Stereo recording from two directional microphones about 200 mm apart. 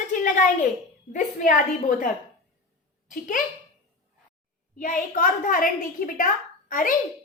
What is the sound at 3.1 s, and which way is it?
Speech, 40° left (ahead or behind).